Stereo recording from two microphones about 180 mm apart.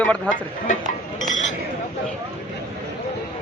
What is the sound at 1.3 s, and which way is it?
Chink, 45° left (ahead or behind).